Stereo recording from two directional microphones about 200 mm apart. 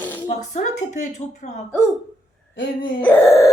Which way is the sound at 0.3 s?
40° left (ahead or behind).